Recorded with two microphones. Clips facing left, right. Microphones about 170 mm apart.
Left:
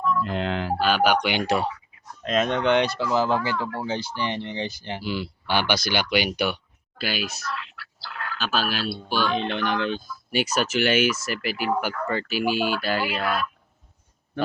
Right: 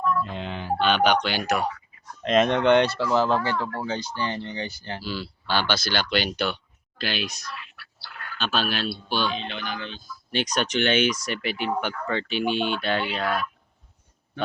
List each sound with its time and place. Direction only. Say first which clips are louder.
0.3 s mantra: left 6 dB; 90° left
0.8 s speech: right 1 dB; 5° left (ahead or behind)
1.5 s speech: even; 30° left (ahead or behind)
2.2 s speech: right 3 dB; centre (ahead or behind)
7.5 s a sound: left 6 dB; 90° left
8.4 s speech: even; 5° left (ahead or behind)
9.3 s speech: left 7 dB; 65° left (ahead or behind)
10.3 s speech: left 2 dB; 5° left (ahead or behind)